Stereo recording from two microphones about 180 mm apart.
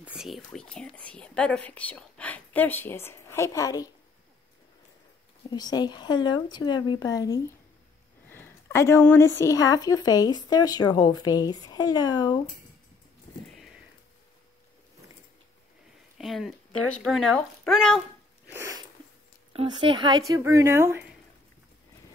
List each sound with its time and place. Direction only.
0.0 s speech: 5° right (ahead or behind); by 3.9 s 20° left (ahead or behind)
5.5 s speech: 20° left (ahead or behind)
13.5 s a sound: centre (ahead or behind)
16.2 s a child's voice: centre (ahead or behind)
18.5 s a sound: 15° right (ahead or behind)
19.5 s speech: 30° right (ahead or behind)